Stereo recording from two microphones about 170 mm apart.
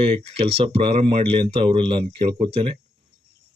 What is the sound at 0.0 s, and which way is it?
Speech, 35° right (ahead or behind).